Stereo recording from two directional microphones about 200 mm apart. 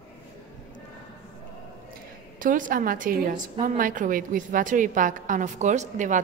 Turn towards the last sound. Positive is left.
turn(degrees=-40)  # may be behind; listen again after turning